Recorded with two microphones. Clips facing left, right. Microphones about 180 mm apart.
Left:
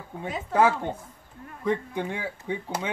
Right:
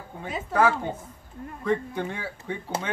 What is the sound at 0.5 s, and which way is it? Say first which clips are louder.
Speech: left 1 dB; 20° left (ahead or behind).